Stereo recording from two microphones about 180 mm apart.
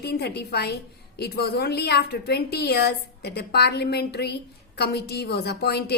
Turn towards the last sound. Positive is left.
turn(degrees=65)  # may be behind; listen again after turning